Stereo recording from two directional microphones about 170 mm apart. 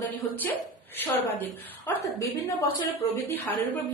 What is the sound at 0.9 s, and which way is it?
Speech, 10° left (ahead or behind).